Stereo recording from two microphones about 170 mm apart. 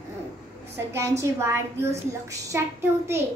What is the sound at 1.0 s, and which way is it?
A child's voice, 15° right (ahead or behind).